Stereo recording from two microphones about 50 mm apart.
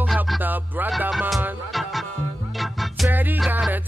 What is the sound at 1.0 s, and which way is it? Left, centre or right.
Music, centre.